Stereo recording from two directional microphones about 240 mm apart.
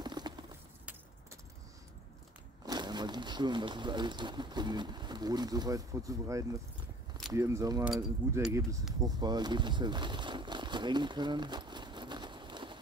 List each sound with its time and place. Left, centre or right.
0.0 s a sound: centre
2.6 s speech: centre
7.9 s speech: centre